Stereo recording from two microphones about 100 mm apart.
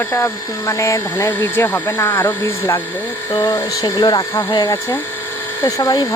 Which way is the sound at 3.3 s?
50° left (ahead or behind).